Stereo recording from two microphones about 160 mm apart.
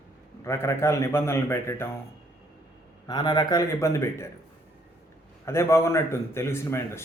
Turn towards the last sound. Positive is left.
turn(degrees=15)  # may be behind; listen again after turning